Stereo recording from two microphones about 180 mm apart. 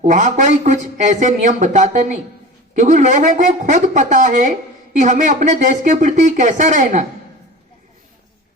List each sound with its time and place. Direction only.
0.0 s speech: 45° right (ahead or behind)